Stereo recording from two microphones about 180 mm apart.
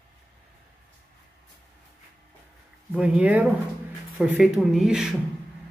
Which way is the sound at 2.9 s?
5° right (ahead or behind).